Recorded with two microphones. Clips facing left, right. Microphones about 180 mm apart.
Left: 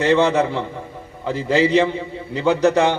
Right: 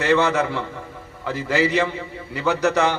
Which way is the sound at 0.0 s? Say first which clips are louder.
Left 3 dB; 15° left (ahead or behind).